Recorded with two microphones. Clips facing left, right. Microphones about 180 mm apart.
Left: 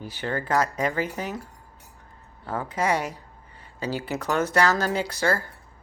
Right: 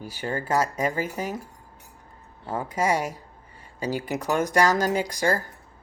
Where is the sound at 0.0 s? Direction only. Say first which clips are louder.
Even; 10° right (ahead or behind).